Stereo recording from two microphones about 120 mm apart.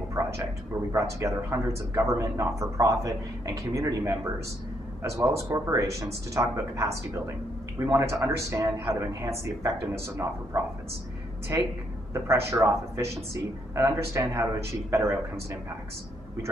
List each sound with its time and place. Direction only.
0.2 s a sound: 25° right (ahead or behind)
0.9 s speech: 25° right (ahead or behind)
12.1 s speech: 20° right (ahead or behind)